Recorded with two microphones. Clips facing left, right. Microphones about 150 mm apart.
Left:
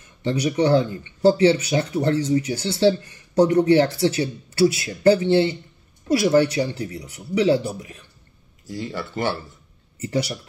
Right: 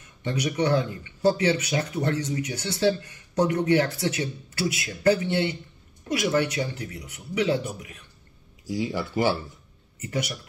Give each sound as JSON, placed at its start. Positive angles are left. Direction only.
{"t": 0.2, "sound": "speech", "side_deg": 30}
{"t": 8.6, "sound": "speech", "side_deg": -10}
{"t": 9.9, "sound": "speech", "side_deg": 30}